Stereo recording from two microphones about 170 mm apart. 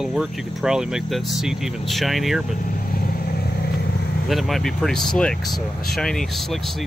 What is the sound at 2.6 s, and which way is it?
Vehicle, 55° left (ahead or behind).